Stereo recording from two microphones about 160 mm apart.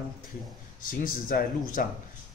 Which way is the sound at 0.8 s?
60° left (ahead or behind).